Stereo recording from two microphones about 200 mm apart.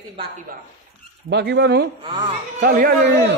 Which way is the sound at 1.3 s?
60° right (ahead or behind).